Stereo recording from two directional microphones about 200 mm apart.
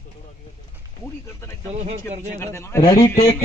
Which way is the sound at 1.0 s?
15° left (ahead or behind).